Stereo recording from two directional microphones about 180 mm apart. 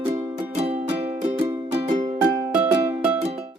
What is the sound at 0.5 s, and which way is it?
Music, 35° right (ahead or behind).